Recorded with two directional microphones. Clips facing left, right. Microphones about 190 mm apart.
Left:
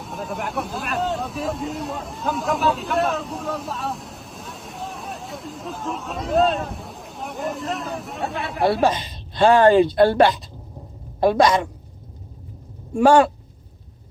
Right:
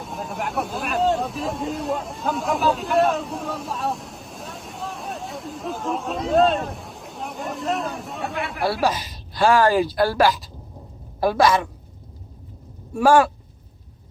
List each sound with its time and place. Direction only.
0.0 s vehicle: centre (ahead or behind)
1.1 s speech: centre (ahead or behind)
8.5 s a woman's voice: 20° left (ahead or behind)
12.9 s a woman's voice: 25° left (ahead or behind)